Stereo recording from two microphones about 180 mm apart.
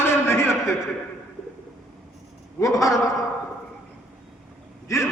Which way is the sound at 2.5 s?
20° left (ahead or behind).